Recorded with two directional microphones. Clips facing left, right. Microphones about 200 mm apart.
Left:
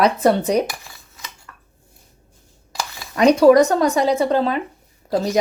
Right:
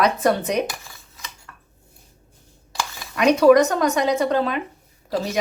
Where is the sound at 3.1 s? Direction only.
35° left (ahead or behind).